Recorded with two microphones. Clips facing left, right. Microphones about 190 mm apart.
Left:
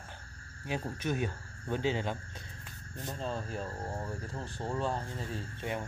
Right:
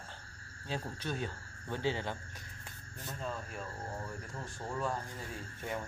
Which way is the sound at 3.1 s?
30° left (ahead or behind).